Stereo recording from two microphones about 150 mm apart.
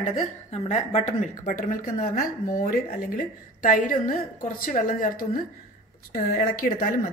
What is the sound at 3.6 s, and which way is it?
A woman's voice, 60° left (ahead or behind).